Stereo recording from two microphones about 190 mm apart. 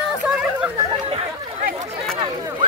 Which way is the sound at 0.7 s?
25° right (ahead or behind).